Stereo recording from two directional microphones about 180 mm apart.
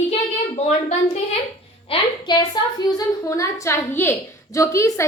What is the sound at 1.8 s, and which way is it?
A woman's voice, 25° left (ahead or behind).